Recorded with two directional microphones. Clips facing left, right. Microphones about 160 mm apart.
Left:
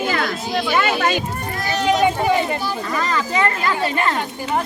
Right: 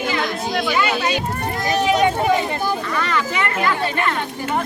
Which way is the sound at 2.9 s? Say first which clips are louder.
Left 1 dB; 35° left (ahead or behind).